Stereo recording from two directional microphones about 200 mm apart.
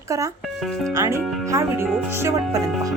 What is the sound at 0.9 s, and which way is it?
Speech, 15° right (ahead or behind).